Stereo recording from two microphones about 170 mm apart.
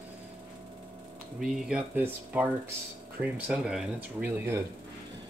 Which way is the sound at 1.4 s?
5° right (ahead or behind).